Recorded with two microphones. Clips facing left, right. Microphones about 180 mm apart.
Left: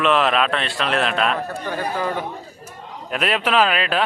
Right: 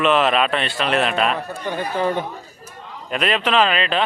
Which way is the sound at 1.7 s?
25° right (ahead or behind).